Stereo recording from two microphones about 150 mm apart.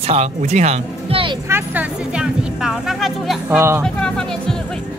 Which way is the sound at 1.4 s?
15° right (ahead or behind).